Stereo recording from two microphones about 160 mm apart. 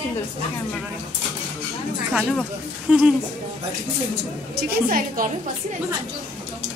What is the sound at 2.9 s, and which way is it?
Speech, 5° right (ahead or behind).